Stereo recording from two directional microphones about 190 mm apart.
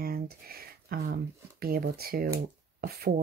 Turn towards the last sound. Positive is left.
turn(degrees=-55)  # may be behind; listen again after turning